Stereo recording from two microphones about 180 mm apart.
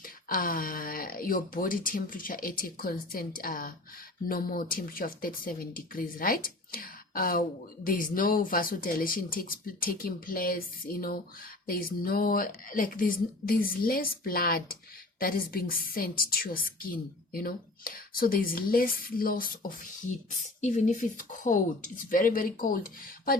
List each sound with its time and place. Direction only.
0.0 s a woman's voice: 50° left (ahead or behind)
20.6 s a woman's voice: 40° left (ahead or behind)